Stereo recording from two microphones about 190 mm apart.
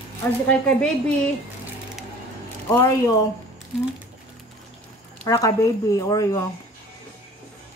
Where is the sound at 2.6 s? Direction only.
15° left (ahead or behind).